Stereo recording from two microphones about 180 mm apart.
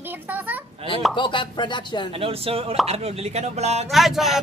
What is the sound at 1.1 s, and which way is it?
Chopping, 25° left (ahead or behind).